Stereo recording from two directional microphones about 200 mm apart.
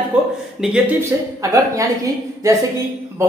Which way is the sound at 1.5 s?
15° right (ahead or behind).